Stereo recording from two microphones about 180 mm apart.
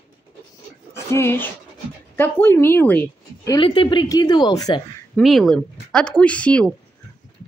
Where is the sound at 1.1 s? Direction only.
15° left (ahead or behind).